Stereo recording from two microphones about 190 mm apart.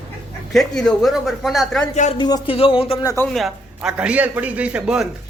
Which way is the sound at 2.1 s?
20° left (ahead or behind).